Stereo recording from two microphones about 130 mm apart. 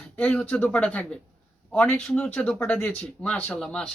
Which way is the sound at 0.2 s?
10° left (ahead or behind).